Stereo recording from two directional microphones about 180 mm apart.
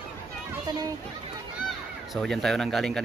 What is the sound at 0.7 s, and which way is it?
Children playing, 20° right (ahead or behind).